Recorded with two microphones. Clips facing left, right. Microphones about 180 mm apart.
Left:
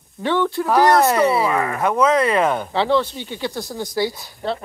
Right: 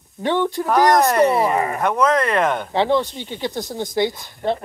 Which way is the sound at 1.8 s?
5° left (ahead or behind).